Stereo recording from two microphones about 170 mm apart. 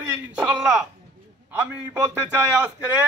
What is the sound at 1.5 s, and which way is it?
A man's voice, 10° right (ahead or behind).